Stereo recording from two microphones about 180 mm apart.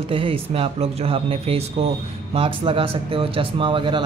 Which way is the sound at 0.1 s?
30° right (ahead or behind).